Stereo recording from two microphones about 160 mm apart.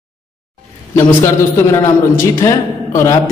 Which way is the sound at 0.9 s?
15° left (ahead or behind).